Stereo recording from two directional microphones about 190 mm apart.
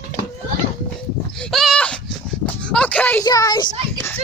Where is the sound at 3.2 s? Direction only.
20° left (ahead or behind).